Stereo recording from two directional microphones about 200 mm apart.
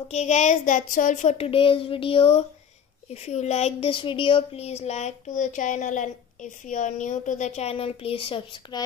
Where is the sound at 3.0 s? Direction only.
35° left (ahead or behind).